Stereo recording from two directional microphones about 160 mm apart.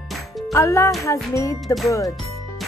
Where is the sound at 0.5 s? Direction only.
15° left (ahead or behind).